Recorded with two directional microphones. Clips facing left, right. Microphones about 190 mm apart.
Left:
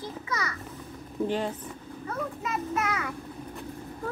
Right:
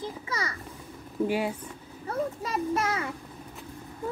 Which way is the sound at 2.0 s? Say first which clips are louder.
Right 3 dB; 35° right (ahead or behind).